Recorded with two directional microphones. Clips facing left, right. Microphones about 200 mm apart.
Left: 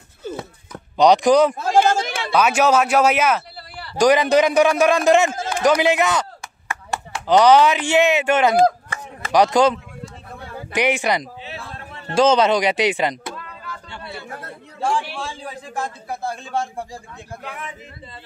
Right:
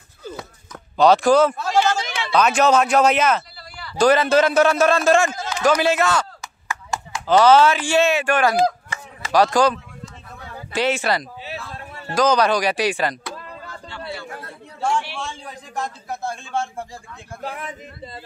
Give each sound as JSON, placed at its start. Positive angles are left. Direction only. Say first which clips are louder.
{"t": 0.2, "sound": "a sound", "louder": "left 4 dB", "side_deg": 25}
{"t": 0.9, "sound": "a man's voice", "louder": "left 1 dB", "side_deg": 15}
{"t": 1.6, "sound": "a sound", "louder": "left 3 dB", "side_deg": 50}
{"t": 2.3, "sound": "a man's voice", "louder": "even", "side_deg": 10}
{"t": 5.3, "sound": "a sound", "louder": "left 3 dB", "side_deg": 50}
{"t": 5.6, "sound": "a man's voice", "louder": "left 1 dB", "side_deg": 15}
{"t": 7.2, "sound": "speech", "louder": "left 1 dB", "side_deg": 15}
{"t": 8.5, "sound": "chop", "louder": "left 3 dB", "side_deg": 55}
{"t": 9.3, "sound": "a man's voice", "louder": "left 1 dB", "side_deg": 20}
{"t": 11.5, "sound": "a man's voice", "louder": "right 1 dB", "side_deg": 25}
{"t": 15.4, "sound": "a man's voice", "louder": "left 1 dB", "side_deg": 5}
{"t": 16.2, "sound": "speech", "louder": "left 1 dB", "side_deg": 35}
{"t": 17.4, "sound": "speech", "louder": "right 6 dB", "side_deg": -35}